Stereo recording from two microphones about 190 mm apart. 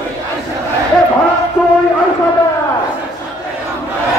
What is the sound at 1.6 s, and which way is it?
Music, 5° right (ahead or behind).